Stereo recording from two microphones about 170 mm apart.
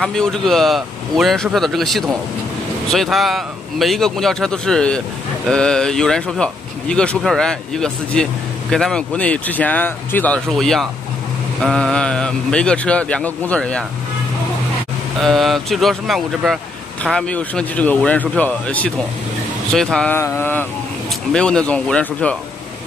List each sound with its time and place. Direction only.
0.0 s speech: 5° left (ahead or behind)
15.1 s speech: centre (ahead or behind)